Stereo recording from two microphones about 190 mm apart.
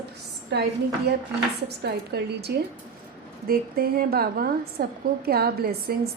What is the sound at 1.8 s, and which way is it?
A woman's voice, 60° right (ahead or behind).